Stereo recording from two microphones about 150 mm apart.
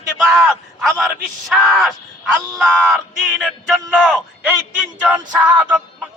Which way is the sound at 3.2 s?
5° right (ahead or behind).